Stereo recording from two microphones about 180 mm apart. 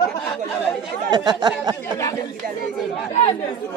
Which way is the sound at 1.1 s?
25° right (ahead or behind).